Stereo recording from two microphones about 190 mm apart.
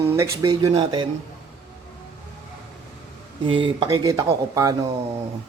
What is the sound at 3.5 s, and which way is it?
Speech, 25° right (ahead or behind).